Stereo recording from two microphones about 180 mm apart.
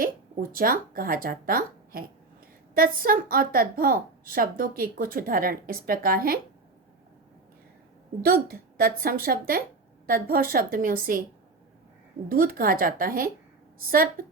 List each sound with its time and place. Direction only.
0.5 s a woman's voice: 55° right (ahead or behind)
8.2 s a woman's voice: 55° right (ahead or behind)
12.3 s a woman's voice: 50° right (ahead or behind)